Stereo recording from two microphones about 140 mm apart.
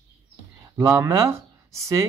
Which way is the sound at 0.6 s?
20° right (ahead or behind).